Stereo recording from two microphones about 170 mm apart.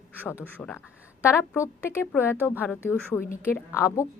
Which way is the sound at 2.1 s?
15° left (ahead or behind).